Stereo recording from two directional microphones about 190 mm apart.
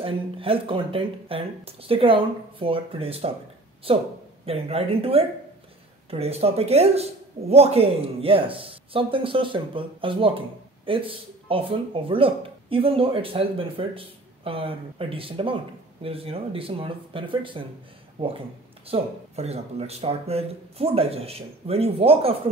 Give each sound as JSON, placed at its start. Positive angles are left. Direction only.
{"t": 0.0, "sound": "speech", "side_deg": -30}